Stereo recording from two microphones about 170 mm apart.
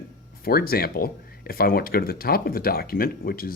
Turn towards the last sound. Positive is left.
turn(degrees=60)  # may be behind; listen again after turning